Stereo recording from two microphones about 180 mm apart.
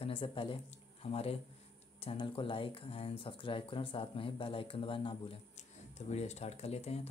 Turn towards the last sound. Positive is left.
turn(degrees=35)  # may be behind; listen again after turning